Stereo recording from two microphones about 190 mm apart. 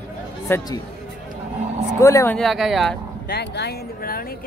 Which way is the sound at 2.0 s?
15° left (ahead or behind).